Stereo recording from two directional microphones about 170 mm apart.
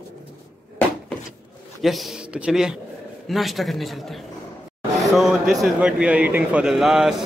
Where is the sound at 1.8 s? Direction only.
Centre (ahead or behind).